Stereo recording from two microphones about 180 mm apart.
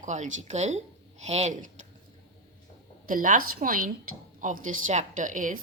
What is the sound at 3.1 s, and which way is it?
A woman's voice, 50° right (ahead or behind).